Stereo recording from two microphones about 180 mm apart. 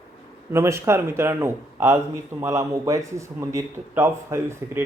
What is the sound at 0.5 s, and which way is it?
A man's voice, 15° right (ahead or behind).